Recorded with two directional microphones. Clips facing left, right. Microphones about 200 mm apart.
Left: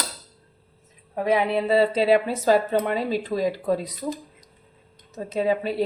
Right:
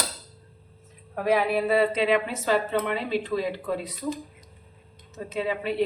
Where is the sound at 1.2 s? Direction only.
20° left (ahead or behind); by 3.9 s 40° left (ahead or behind).